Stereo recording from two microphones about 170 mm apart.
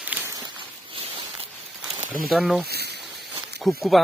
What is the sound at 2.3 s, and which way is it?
Speech, centre (ahead or behind).